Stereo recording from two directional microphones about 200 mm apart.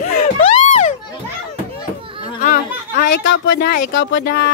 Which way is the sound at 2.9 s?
60° left (ahead or behind).